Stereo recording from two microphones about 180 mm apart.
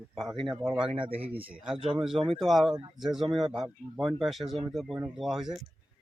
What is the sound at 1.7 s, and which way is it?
Speech, 30° right (ahead or behind).